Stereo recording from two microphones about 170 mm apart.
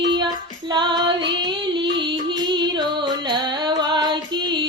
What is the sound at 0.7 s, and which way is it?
Music, 25° right (ahead or behind).